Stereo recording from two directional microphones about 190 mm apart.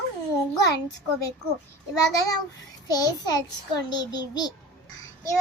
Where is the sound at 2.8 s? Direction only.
20° left (ahead or behind).